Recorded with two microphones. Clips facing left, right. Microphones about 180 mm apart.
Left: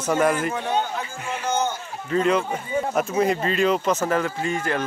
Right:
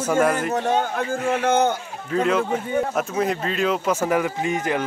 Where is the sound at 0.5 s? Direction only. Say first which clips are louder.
Right 3 dB; 45° right (ahead or behind).